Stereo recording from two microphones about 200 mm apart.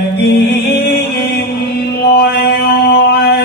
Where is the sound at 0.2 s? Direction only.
55° left (ahead or behind).